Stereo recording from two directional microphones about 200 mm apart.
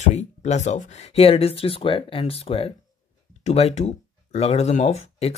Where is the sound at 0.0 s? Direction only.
35° left (ahead or behind).